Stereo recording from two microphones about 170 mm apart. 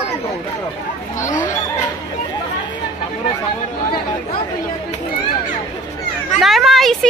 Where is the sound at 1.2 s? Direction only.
50° left (ahead or behind).